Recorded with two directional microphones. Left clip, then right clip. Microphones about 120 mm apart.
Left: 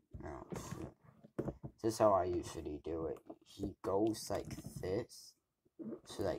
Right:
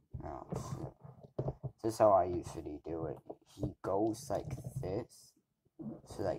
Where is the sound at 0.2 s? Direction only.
5° right (ahead or behind).